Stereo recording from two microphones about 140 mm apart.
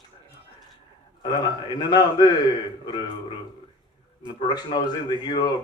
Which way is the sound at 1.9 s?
30° left (ahead or behind).